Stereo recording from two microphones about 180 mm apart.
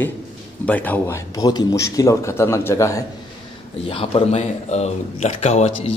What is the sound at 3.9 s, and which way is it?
Speech, 30° left (ahead or behind).